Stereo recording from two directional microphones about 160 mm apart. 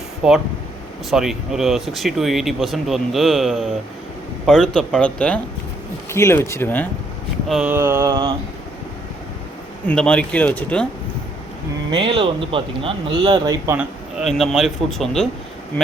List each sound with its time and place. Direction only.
0.2 s speech: 5° right (ahead or behind); by 6.8 s 15° left (ahead or behind)
7.4 s speech: centre (ahead or behind)
7.7 s mantra: 20° right (ahead or behind)
9.8 s speech: 5° left (ahead or behind)
11.9 s speech: 30° right (ahead or behind)
14.3 s speech: centre (ahead or behind)